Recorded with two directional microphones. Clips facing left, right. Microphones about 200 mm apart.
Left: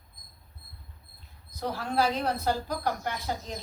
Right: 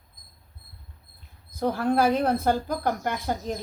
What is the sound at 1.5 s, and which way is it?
Speech, 55° right (ahead or behind).